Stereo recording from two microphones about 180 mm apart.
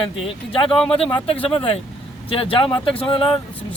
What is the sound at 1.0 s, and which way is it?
Speech, 35° left (ahead or behind).